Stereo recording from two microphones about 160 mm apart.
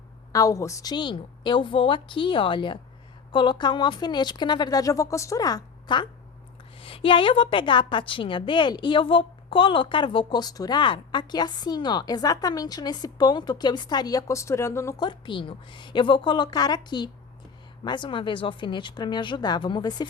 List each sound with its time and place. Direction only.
0.3 s a woman's voice: 20° left (ahead or behind)